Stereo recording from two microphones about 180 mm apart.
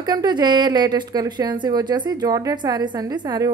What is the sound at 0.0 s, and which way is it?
A woman's voice, 25° right (ahead or behind).